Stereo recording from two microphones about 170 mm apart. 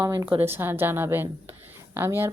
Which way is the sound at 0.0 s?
20° right (ahead or behind).